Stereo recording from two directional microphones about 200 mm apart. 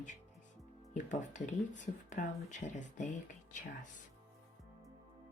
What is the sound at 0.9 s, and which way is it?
Speech, 40° left (ahead or behind).